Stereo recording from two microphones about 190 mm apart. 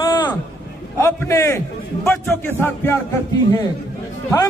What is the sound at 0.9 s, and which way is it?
A man's voice, 15° left (ahead or behind).